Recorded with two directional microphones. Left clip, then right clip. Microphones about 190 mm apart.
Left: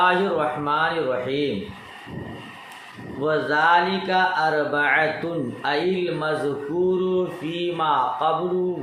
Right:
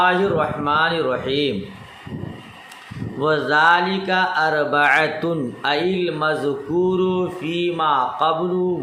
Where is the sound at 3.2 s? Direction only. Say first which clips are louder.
Right 4 dB; 40° right (ahead or behind).